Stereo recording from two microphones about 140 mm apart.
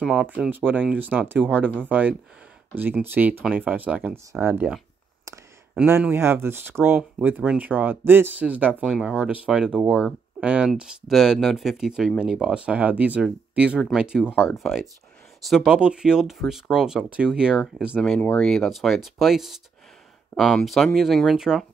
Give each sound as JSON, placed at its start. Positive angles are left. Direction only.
{"t": 0.0, "sound": "speech", "side_deg": -5}
{"t": 5.8, "sound": "speech", "side_deg": -15}
{"t": 18.2, "sound": "speech", "side_deg": 5}